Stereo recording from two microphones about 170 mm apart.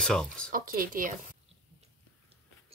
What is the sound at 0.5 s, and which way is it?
Speech, 60° right (ahead or behind).